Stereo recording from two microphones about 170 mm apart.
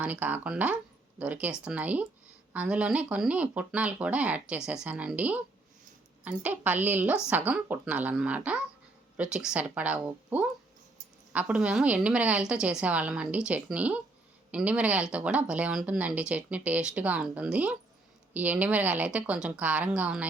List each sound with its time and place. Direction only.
0.0 s speech: 10° right (ahead or behind)